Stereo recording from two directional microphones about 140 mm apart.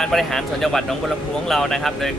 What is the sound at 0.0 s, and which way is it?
Speech, centre (ahead or behind).